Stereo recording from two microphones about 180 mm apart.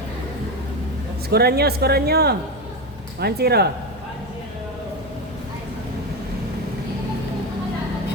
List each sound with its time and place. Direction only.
1.3 s speech: 60° right (ahead or behind)